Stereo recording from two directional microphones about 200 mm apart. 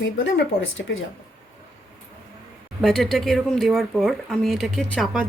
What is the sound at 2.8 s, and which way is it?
Speech, centre (ahead or behind).